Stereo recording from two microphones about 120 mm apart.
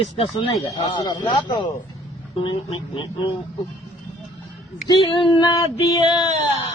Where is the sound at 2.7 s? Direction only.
50° left (ahead or behind).